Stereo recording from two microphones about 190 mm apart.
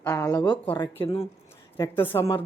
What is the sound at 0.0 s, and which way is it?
Speech, 15° left (ahead or behind).